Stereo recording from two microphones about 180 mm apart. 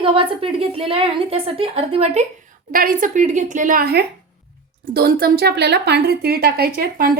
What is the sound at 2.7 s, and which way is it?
A woman's voice, 50° right (ahead or behind).